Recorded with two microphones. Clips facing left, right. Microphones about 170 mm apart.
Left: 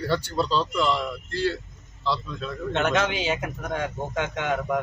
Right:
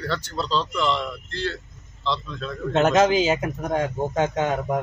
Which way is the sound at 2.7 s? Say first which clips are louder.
Right 7 dB; 35° right (ahead or behind).